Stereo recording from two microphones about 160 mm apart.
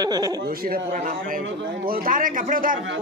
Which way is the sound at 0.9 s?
55° right (ahead or behind).